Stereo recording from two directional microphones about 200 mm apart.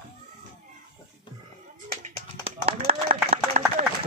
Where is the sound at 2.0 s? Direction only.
30° right (ahead or behind).